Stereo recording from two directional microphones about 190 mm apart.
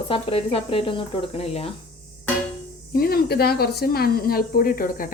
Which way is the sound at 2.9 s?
50° left (ahead or behind).